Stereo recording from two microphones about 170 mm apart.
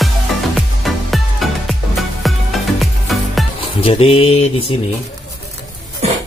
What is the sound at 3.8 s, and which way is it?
Speech, 35° left (ahead or behind).